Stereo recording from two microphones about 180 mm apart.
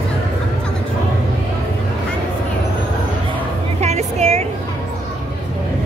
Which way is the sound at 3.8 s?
35° right (ahead or behind).